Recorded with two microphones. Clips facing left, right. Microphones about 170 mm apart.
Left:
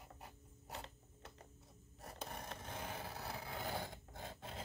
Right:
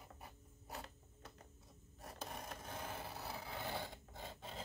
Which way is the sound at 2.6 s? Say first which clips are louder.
Left 1 dB; 15° left (ahead or behind).